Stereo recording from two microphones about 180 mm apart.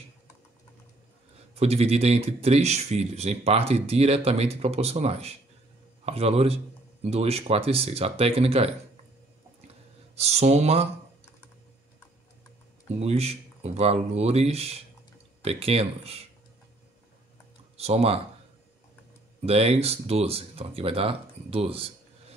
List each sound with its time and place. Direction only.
1.5 s speech: 35° right (ahead or behind)
10.1 s speech: 35° right (ahead or behind)
13.0 s speech: 35° right (ahead or behind)
17.7 s speech: 35° right (ahead or behind)
19.4 s speech: 35° right (ahead or behind)